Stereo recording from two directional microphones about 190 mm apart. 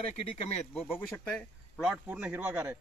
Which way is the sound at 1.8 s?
5° right (ahead or behind).